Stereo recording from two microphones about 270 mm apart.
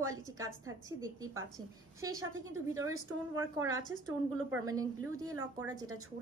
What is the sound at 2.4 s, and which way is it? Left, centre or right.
A woman's voice, centre.